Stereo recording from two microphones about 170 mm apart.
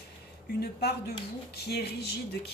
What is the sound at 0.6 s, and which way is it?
A woman's voice, 65° left (ahead or behind).